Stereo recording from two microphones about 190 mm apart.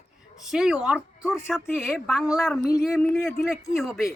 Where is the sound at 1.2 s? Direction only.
15° left (ahead or behind).